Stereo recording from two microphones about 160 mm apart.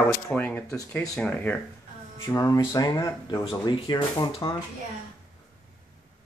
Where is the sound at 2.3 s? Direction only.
25° left (ahead or behind).